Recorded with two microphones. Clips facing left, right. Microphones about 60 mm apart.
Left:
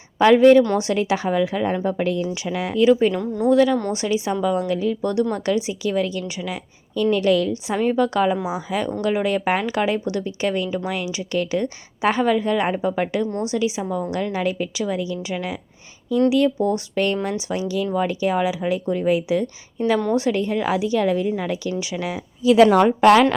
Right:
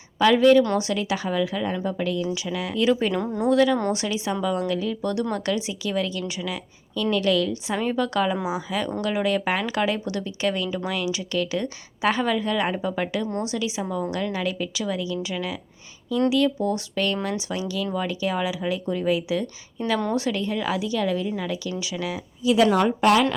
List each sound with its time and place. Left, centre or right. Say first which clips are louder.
0.3 s a woman's voice: left 4 dB; left
2.7 s a woman's voice: left 6 dB; centre; by 22.2 s left
22.4 s a woman's voice: left 5 dB; left